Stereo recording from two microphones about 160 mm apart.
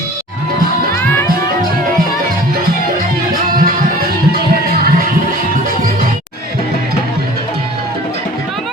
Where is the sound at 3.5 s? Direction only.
65° right (ahead or behind).